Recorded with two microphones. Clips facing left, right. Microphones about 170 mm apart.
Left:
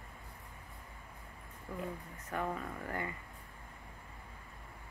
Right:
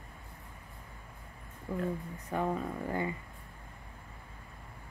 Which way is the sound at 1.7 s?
30° right (ahead or behind).